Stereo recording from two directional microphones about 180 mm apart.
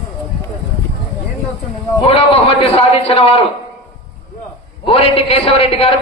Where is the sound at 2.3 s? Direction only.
30° left (ahead or behind).